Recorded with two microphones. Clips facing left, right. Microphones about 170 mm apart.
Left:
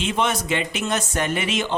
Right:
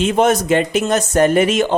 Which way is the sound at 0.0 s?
45° right (ahead or behind).